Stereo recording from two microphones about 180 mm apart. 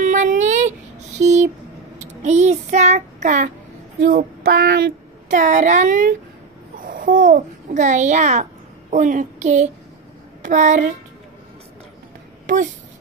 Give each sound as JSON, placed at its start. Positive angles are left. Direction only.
{"t": 0.0, "sound": "a sound", "side_deg": -45}
{"t": 1.2, "sound": "speech", "side_deg": -40}
{"t": 2.0, "sound": "child singing", "side_deg": -40}
{"t": 4.0, "sound": "female singing", "side_deg": -55}
{"t": 5.3, "sound": "a child's voice", "side_deg": -45}